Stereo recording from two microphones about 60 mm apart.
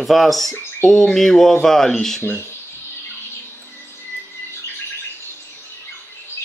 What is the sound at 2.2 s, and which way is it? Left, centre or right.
Speech, left.